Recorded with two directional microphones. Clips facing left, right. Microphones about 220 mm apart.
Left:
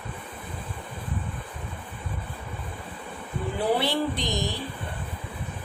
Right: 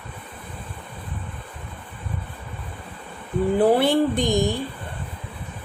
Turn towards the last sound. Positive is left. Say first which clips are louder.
# right 8 dB
turn(degrees=-50)  # may be behind; listen again after turning